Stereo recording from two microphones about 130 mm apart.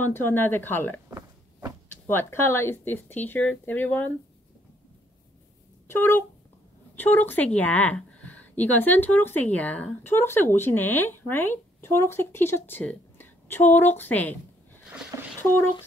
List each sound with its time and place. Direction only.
0.0 s speech: 15° left (ahead or behind)
2.0 s speech: 20° left (ahead or behind)
5.9 s speech: 20° left (ahead or behind)
14.9 s a sound: 10° right (ahead or behind)